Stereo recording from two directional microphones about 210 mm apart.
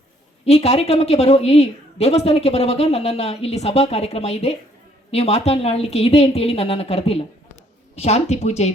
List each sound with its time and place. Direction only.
0.4 s a woman's voice: 30° left (ahead or behind)